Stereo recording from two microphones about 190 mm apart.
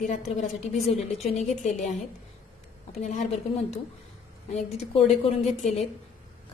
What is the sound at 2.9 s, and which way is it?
Speech, 40° left (ahead or behind).